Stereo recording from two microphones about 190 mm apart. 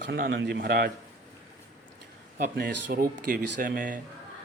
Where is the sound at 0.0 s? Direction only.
55° right (ahead or behind).